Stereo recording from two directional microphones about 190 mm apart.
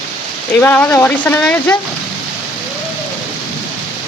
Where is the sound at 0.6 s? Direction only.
10° left (ahead or behind).